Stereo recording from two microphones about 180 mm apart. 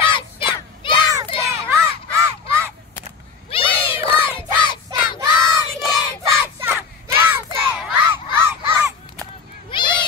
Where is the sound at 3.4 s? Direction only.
30° left (ahead or behind).